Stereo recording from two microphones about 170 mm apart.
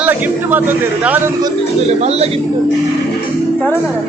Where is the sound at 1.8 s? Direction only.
40° right (ahead or behind).